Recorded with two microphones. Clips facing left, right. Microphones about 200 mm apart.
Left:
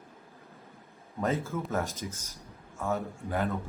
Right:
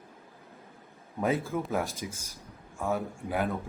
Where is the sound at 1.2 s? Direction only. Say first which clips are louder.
Right 2 dB; 15° right (ahead or behind).